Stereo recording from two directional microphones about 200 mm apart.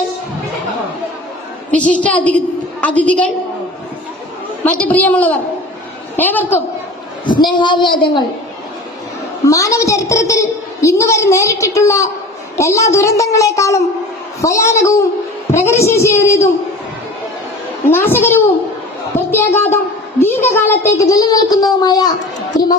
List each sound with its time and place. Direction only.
1.7 s a woman's voice: 5° left (ahead or behind)
4.6 s a woman's voice: 5° left (ahead or behind)
7.3 s speech: 25° left (ahead or behind)
9.5 s a woman's voice: 15° left (ahead or behind)
17.9 s a woman's voice: 10° left (ahead or behind)
19.3 s a sound: 10° left (ahead or behind)
21.0 s speech: 15° left (ahead or behind)